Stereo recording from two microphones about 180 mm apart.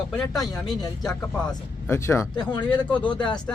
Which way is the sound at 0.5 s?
20° left (ahead or behind).